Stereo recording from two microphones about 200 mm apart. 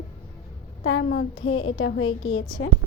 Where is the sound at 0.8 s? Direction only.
70° left (ahead or behind).